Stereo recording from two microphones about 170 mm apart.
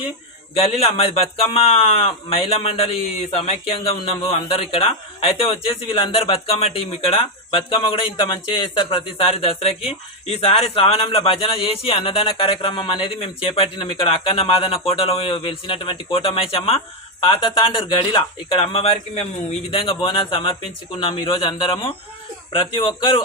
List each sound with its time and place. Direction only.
0.5 s speech: 35° left (ahead or behind)